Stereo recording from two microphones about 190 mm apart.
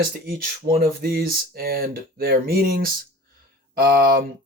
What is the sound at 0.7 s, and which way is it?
Speech, 50° right (ahead or behind).